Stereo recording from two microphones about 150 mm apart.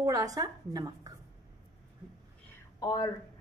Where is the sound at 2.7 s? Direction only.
25° left (ahead or behind).